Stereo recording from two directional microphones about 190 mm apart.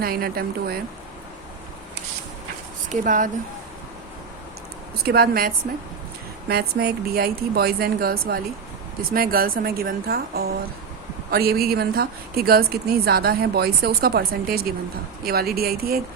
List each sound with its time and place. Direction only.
0.0 s speech: 50° right (ahead or behind)
2.9 s speech: 45° right (ahead or behind)
5.0 s a woman's voice: 55° right (ahead or behind)